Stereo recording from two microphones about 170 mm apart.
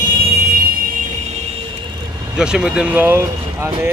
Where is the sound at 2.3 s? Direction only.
5° right (ahead or behind).